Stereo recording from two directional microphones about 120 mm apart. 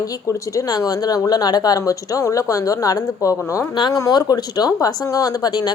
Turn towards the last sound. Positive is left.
turn(degrees=35)  # may be behind; listen again after turning